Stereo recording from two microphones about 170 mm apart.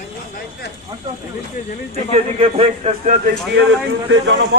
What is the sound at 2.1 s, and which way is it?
A man's voice, 35° right (ahead or behind).